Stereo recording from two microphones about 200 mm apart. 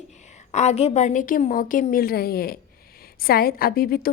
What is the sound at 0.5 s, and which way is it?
A woman's voice, 35° left (ahead or behind).